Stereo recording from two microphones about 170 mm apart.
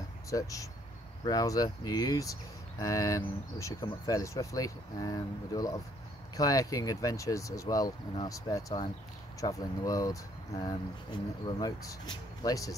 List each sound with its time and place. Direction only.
0.3 s speech: 20° left (ahead or behind)
11.4 s speech: 20° left (ahead or behind)